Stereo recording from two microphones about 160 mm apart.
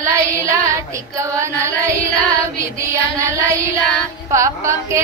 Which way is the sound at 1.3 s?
20° right (ahead or behind).